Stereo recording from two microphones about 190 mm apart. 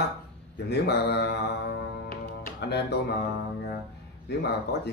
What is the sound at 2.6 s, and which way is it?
Speech, 60° left (ahead or behind).